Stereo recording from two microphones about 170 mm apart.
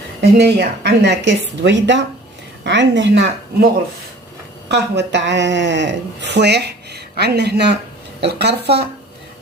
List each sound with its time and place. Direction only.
0.2 s a woman's voice: 70° right (ahead or behind); by 3.7 s 90° right
4.7 s a woman's voice: 90° right